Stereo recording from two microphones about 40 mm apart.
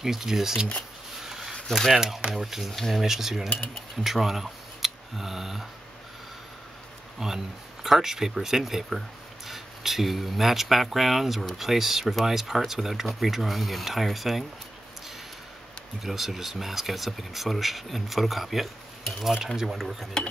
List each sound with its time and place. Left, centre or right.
0.0 s speech: centre
1.2 s a sound: centre
1.5 s a sound: centre
2.3 s speech: centre
3.0 s speech: centre
7.2 s speech: centre
16.0 s speech: centre